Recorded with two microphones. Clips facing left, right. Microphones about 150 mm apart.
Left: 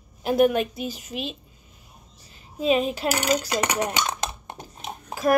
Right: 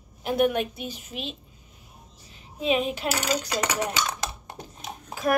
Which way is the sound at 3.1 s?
20° left (ahead or behind).